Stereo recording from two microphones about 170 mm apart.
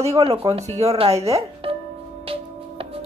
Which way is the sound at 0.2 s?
35° right (ahead or behind).